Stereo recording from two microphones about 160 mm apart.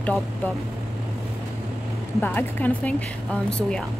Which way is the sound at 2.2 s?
10° left (ahead or behind).